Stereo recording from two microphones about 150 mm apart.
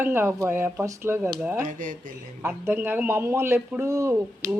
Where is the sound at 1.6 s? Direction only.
65° right (ahead or behind).